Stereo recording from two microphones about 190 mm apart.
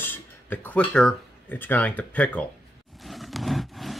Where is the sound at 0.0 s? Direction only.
10° left (ahead or behind).